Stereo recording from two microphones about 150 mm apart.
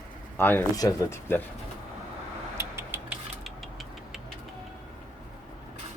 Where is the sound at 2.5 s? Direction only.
15° right (ahead or behind).